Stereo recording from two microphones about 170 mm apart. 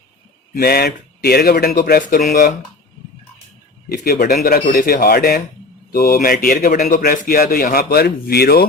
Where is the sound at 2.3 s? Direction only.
50° left (ahead or behind).